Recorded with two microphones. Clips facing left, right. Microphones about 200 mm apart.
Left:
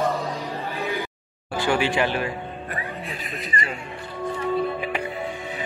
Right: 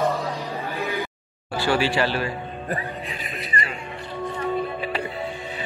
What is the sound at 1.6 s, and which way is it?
Speech, 15° left (ahead or behind).